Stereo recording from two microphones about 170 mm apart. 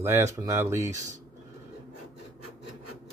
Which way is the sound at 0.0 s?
15° right (ahead or behind).